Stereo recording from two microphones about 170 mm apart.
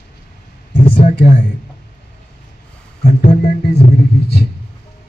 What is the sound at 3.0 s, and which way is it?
Music, 45° left (ahead or behind).